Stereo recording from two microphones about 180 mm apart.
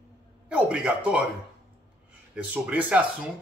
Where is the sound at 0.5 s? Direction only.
5° right (ahead or behind).